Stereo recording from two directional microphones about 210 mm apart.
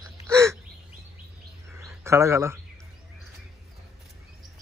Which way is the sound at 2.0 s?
15° right (ahead or behind).